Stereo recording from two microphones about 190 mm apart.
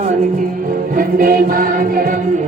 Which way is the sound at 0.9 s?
50° right (ahead or behind).